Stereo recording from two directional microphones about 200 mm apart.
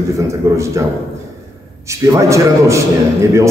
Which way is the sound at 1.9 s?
15° right (ahead or behind).